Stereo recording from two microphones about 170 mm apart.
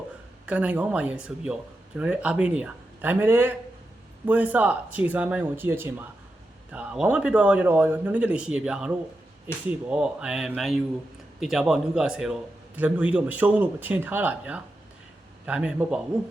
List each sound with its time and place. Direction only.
0.4 s a man's voice: 5° right (ahead or behind)